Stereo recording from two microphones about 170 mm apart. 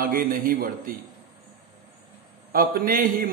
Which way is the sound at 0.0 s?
55° right (ahead or behind).